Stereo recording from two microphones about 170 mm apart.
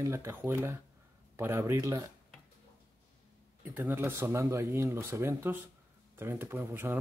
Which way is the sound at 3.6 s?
10° right (ahead or behind).